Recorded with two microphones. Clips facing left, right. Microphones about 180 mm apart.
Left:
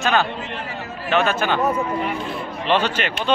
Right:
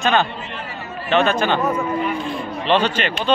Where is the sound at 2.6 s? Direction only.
10° left (ahead or behind).